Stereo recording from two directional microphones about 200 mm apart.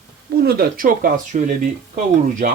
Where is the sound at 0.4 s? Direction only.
50° right (ahead or behind).